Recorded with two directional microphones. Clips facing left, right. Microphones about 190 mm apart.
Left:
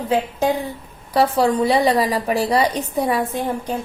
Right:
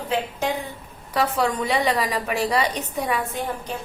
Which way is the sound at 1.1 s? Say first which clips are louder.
Left 6 dB; 35° left (ahead or behind).